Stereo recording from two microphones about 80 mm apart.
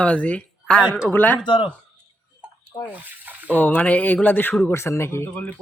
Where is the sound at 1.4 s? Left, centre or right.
Left.